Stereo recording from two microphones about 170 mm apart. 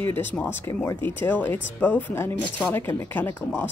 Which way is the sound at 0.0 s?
10° left (ahead or behind).